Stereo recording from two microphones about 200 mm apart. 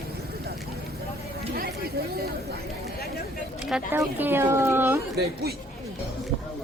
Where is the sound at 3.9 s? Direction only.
10° right (ahead or behind).